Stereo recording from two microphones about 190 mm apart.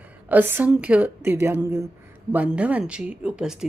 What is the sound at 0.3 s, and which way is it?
A woman's voice, 10° right (ahead or behind).